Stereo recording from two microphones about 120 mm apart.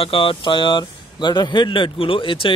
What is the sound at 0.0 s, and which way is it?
A man's voice, 50° left (ahead or behind).